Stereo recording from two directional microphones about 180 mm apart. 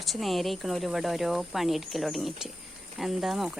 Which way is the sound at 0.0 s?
Centre (ahead or behind).